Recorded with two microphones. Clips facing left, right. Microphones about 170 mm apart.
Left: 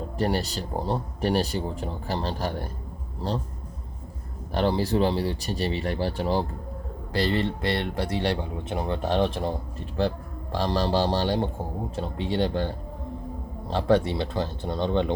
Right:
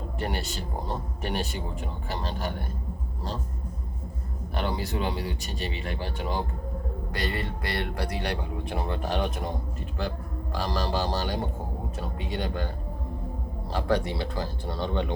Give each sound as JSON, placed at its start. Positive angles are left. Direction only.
{"t": 0.2, "sound": "speech", "side_deg": 35}
{"t": 4.5, "sound": "speech", "side_deg": 35}
{"t": 10.5, "sound": "speech", "side_deg": 30}
{"t": 13.7, "sound": "speech", "side_deg": 25}